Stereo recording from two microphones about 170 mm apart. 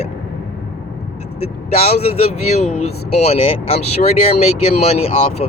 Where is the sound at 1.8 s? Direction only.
40° left (ahead or behind).